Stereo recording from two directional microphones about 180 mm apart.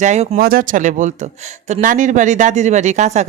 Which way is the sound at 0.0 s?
40° right (ahead or behind).